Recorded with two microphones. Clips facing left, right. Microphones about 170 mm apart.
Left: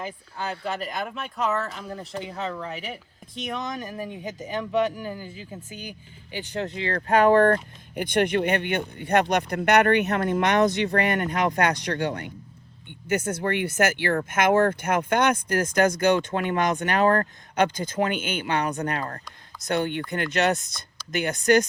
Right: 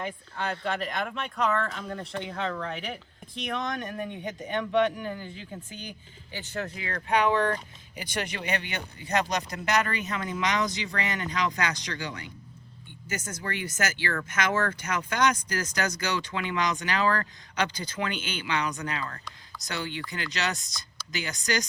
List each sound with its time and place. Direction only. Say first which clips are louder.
0.0 s speech: even; 5° left (ahead or behind); by 7.0 s 30° left (ahead or behind)
7.1 s speech: left 7 dB; 45° left (ahead or behind)